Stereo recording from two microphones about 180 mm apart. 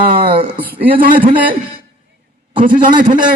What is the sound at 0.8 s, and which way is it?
Speech, 50° right (ahead or behind).